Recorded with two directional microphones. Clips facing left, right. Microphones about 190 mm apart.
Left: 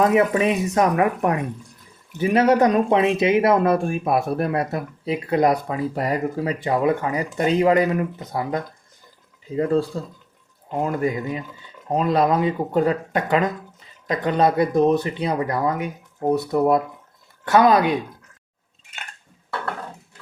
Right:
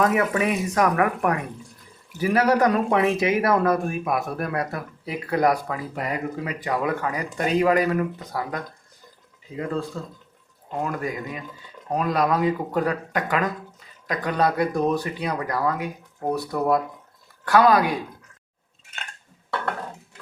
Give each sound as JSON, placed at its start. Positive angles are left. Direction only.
{"t": 0.0, "sound": "speech", "side_deg": 25}
{"t": 9.6, "sound": "speech", "side_deg": 35}
{"t": 10.8, "sound": "speech", "side_deg": 25}